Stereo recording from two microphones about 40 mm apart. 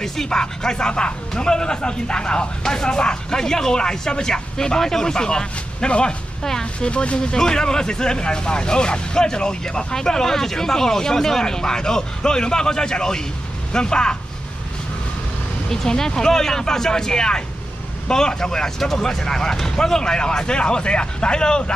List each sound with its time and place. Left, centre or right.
0.0 s speech: centre
15.7 s speech: centre